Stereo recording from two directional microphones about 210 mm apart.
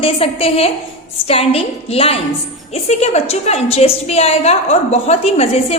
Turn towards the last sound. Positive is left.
turn(degrees=30)  # may be behind; listen again after turning